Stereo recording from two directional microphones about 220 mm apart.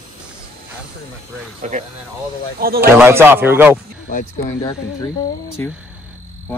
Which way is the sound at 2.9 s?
10° right (ahead or behind).